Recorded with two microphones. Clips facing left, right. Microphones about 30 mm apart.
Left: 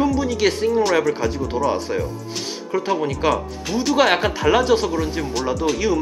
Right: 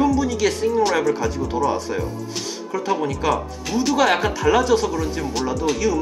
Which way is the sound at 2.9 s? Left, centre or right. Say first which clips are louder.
Right 1 dB; centre.